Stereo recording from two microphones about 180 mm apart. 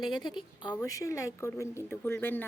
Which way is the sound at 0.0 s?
25° left (ahead or behind).